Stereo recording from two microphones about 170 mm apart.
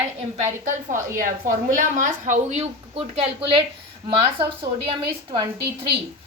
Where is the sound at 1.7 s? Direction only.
50° right (ahead or behind).